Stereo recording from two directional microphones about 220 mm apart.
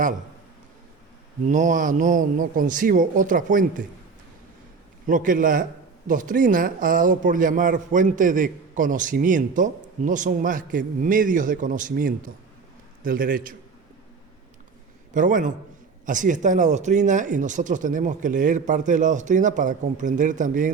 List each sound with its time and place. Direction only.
1.5 s speech: 35° right (ahead or behind)
5.0 s speech: 35° right (ahead or behind)
15.1 s speech: 35° right (ahead or behind)